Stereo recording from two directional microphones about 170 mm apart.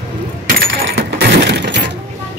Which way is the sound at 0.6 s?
65° right (ahead or behind).